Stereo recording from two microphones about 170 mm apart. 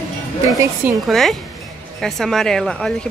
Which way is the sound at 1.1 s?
Centre (ahead or behind).